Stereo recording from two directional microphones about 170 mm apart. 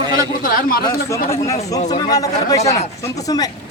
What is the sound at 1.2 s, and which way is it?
Speech, 15° left (ahead or behind).